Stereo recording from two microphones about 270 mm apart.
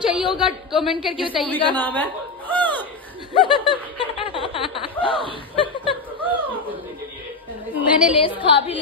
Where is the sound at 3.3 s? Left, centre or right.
Centre.